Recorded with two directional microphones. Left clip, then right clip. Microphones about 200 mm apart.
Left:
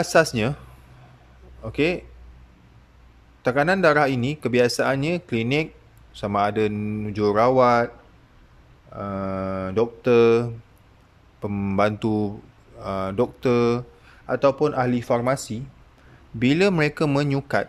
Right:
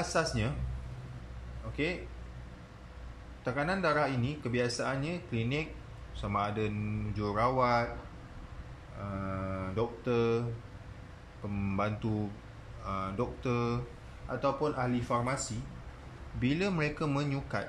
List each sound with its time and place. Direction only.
0.0 s speech: 50° left (ahead or behind)
1.6 s speech: 50° left (ahead or behind)
3.4 s speech: 55° left (ahead or behind)
8.9 s speech: 50° left (ahead or behind)
11.4 s speech: 45° left (ahead or behind)